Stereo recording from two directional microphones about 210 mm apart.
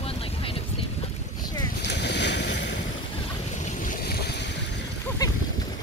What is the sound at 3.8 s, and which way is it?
Boat, 45° left (ahead or behind).